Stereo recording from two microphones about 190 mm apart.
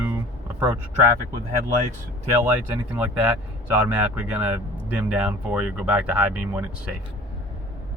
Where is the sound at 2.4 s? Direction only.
10° right (ahead or behind).